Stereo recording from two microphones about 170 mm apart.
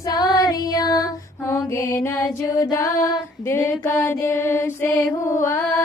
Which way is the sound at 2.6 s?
20° left (ahead or behind).